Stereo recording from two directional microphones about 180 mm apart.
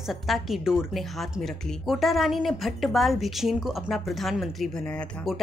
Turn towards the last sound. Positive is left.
turn(degrees=0)  # may be behind; listen again after turning